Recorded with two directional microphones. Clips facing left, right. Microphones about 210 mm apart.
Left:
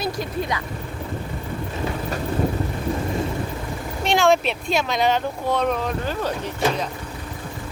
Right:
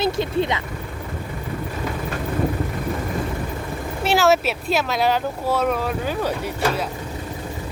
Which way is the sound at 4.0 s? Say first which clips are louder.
Right 1 dB; 5° right (ahead or behind).